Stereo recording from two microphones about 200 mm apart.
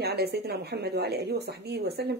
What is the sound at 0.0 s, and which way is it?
Speech, 50° right (ahead or behind).